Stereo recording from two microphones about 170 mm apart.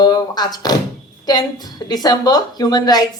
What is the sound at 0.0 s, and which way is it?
A woman's voice, 25° left (ahead or behind).